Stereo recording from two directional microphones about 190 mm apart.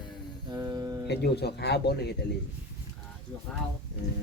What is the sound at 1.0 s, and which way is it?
Speech, 60° left (ahead or behind).